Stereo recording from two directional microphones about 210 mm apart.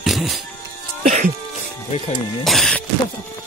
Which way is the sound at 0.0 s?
Centre (ahead or behind).